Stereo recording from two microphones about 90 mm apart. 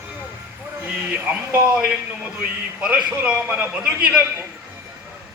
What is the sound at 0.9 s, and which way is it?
A man's voice, 20° right (ahead or behind).